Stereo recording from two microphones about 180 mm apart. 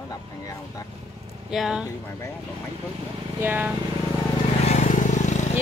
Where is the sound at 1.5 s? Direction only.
5° right (ahead or behind).